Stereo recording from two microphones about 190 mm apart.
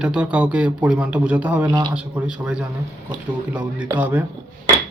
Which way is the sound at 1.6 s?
20° right (ahead or behind).